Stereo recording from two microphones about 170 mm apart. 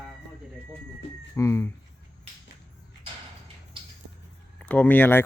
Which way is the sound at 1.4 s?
15° left (ahead or behind).